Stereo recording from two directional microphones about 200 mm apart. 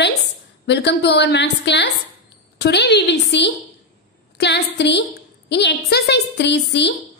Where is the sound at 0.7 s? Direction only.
60° left (ahead or behind).